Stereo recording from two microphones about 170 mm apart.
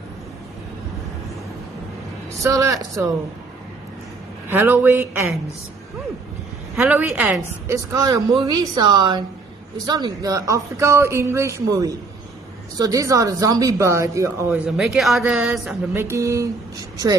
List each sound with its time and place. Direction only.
2.3 s speech: 20° right (ahead or behind)
4.5 s a woman's voice: 15° right (ahead or behind)
6.8 s a woman's voice: 15° right (ahead or behind)
14.8 s a woman's voice: centre (ahead or behind)
15.9 s a woman's voice: 15° right (ahead or behind)